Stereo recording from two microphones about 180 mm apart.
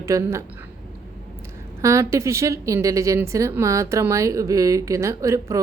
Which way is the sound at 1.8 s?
15° right (ahead or behind).